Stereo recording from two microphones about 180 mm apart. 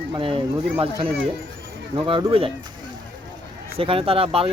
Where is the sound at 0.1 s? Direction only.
30° right (ahead or behind).